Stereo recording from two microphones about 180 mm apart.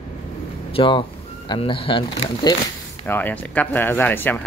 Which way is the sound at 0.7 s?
30° left (ahead or behind).